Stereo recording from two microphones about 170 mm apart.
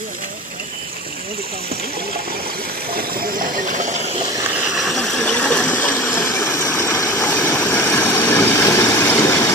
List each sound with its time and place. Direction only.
2.9 s water: 55° right (ahead or behind)
4.7 s a sound: centre (ahead or behind); by 7.1 s 20° left (ahead or behind)
7.2 s vehicle: 10° left (ahead or behind)